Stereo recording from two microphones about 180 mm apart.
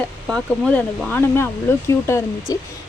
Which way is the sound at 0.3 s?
5° left (ahead or behind).